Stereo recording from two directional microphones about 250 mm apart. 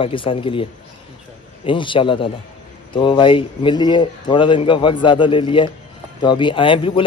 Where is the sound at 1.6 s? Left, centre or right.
Centre.